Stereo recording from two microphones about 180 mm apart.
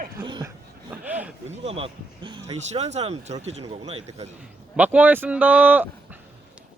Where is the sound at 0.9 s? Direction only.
10° right (ahead or behind).